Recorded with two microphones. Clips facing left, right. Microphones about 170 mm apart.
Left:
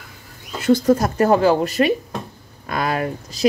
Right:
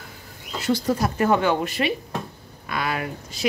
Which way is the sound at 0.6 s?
50° left (ahead or behind).